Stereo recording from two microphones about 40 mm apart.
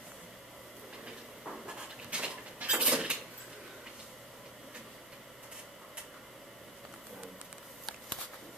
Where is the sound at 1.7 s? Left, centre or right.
Right.